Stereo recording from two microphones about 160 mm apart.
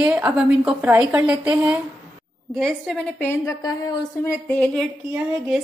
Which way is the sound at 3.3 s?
20° left (ahead or behind).